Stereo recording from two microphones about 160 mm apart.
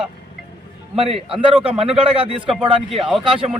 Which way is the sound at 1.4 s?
35° right (ahead or behind).